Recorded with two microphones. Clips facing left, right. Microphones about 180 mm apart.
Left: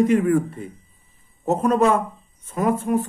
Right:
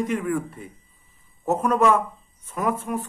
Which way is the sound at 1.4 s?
30° left (ahead or behind).